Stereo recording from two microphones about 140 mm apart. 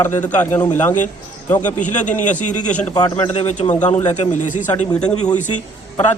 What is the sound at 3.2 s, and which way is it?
Speech, 40° left (ahead or behind).